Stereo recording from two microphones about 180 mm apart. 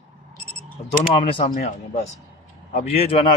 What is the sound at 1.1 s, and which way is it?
Speech, 30° left (ahead or behind).